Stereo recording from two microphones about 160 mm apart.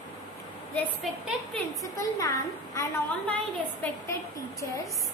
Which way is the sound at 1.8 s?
20° left (ahead or behind).